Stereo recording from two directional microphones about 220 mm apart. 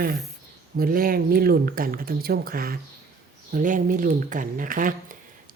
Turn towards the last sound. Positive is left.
turn(degrees=-40)  # may be behind; listen again after turning